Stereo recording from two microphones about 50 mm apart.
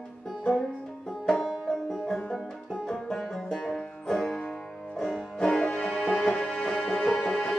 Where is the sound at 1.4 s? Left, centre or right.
Centre.